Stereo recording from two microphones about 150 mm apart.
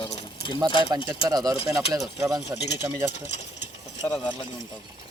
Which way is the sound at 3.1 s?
50° left (ahead or behind).